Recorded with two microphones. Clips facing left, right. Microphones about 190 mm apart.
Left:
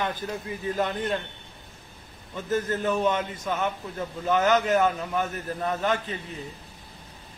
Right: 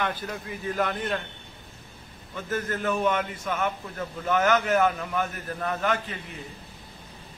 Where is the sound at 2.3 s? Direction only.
20° left (ahead or behind).